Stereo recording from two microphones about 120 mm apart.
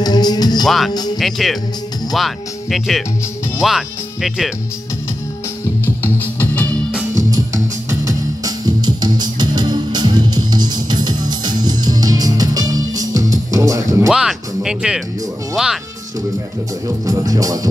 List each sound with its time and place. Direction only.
0.0 s music: 35° left (ahead or behind)
0.7 s speech: centre (ahead or behind)
6.0 s music: 15° left (ahead or behind)
7.2 s music: 30° right (ahead or behind)
14.0 s speech: 5° right (ahead or behind)
16.8 s speech: 30° right (ahead or behind)